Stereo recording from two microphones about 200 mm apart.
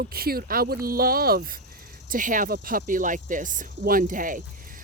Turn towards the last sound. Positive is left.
turn(degrees=-40)  # may be behind; listen again after turning